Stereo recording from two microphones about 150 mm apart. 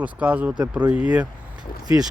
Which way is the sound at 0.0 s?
10° right (ahead or behind).